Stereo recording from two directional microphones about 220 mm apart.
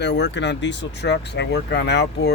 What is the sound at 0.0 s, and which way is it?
Speech, 50° left (ahead or behind).